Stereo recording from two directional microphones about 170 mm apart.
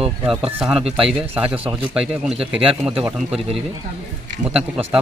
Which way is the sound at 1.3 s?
10° right (ahead or behind).